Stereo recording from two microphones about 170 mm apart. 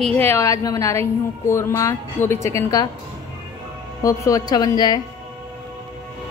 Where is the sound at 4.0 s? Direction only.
20° left (ahead or behind).